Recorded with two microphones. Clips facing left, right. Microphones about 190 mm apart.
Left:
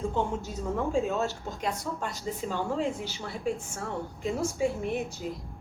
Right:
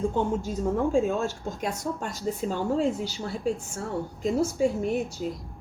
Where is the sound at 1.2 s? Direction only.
50° right (ahead or behind).